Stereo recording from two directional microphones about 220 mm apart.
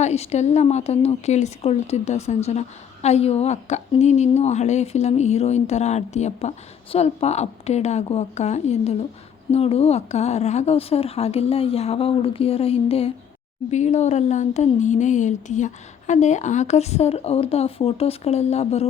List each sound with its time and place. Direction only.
0.0 s a woman's voice: 30° left (ahead or behind)